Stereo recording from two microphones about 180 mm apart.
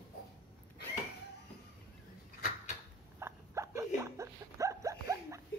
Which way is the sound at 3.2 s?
15° right (ahead or behind).